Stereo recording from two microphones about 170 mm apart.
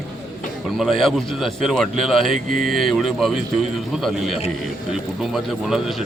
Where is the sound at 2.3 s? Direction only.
50° right (ahead or behind).